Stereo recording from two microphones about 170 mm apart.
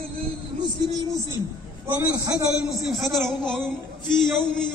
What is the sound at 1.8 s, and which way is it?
Speech, 20° right (ahead or behind).